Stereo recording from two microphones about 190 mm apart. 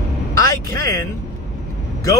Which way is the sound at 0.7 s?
20° left (ahead or behind).